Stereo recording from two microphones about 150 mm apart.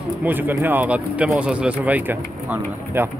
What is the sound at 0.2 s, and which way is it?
Speech, 15° right (ahead or behind).